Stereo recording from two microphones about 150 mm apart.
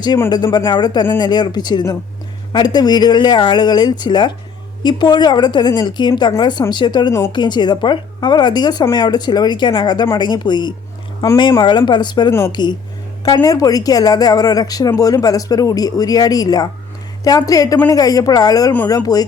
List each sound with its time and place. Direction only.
0.3 s a woman's voice: 25° left (ahead or behind)